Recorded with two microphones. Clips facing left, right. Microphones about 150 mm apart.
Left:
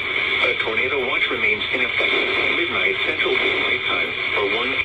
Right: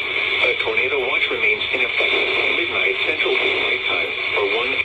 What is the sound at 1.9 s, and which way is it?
Radio, 20° right (ahead or behind).